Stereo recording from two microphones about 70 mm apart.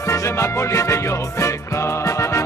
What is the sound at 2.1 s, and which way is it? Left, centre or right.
Music, left.